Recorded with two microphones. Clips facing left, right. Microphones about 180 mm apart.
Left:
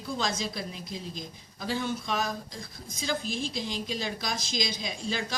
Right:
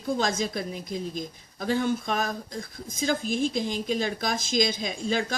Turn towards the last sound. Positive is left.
turn(degrees=-50)  # may be behind; listen again after turning